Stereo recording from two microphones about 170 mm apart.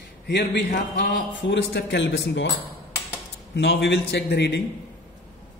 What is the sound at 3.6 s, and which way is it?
A man's voice, 90° left.